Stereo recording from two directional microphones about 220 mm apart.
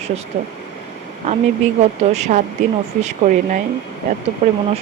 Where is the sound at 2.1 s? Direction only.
30° right (ahead or behind).